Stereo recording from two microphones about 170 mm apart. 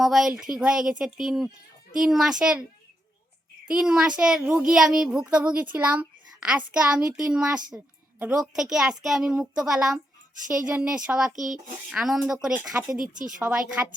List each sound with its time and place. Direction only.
0.0 s a child's voice: centre (ahead or behind)
3.7 s a child's voice: 5° right (ahead or behind)
13.0 s speech: 50° right (ahead or behind)
13.4 s a woman's voice: 5° right (ahead or behind)